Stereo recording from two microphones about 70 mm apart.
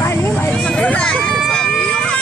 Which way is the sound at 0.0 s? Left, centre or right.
Left.